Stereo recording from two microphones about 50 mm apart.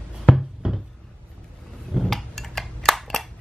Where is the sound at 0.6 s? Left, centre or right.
Centre.